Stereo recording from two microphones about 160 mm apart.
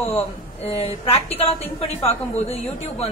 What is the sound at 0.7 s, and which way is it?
A woman's voice, 40° left (ahead or behind).